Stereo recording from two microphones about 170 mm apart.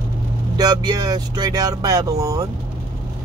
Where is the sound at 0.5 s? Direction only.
25° right (ahead or behind).